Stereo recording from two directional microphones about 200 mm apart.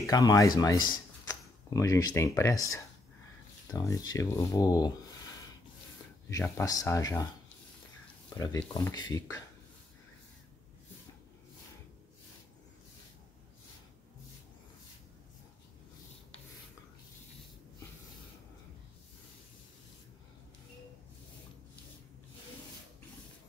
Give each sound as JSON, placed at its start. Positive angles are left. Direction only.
{"t": 0.0, "sound": "speech", "side_deg": 15}
{"t": 6.2, "sound": "speech", "side_deg": 15}
{"t": 8.5, "sound": "speech", "side_deg": 15}